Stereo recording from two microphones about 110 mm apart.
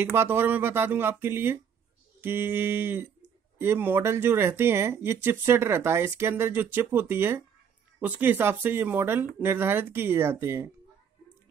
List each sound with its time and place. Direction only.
0.1 s speech: 20° right (ahead or behind)